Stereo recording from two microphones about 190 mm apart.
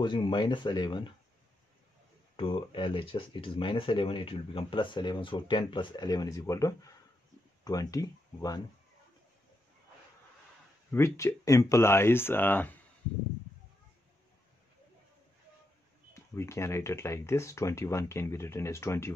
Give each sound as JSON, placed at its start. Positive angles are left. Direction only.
{"t": 0.0, "sound": "speech", "side_deg": 25}
{"t": 2.3, "sound": "speech", "side_deg": 30}
{"t": 10.9, "sound": "speech", "side_deg": 15}
{"t": 16.3, "sound": "speech", "side_deg": 15}